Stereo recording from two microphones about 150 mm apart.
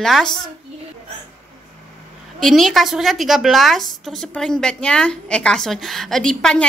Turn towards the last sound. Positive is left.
turn(degrees=5)  # may be behind; listen again after turning